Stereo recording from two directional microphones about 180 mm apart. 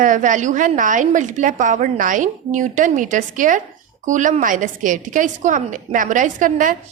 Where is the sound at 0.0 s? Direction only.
45° right (ahead or behind).